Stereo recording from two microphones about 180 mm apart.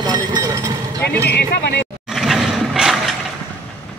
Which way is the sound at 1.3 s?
65° left (ahead or behind).